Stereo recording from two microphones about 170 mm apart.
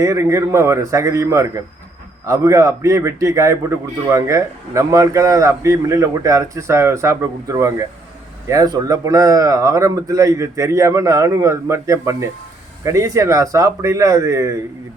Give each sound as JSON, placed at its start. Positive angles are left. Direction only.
{"t": 0.0, "sound": "a man's voice", "side_deg": -20}